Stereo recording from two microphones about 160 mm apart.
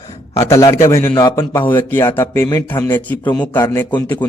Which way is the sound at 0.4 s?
20° left (ahead or behind).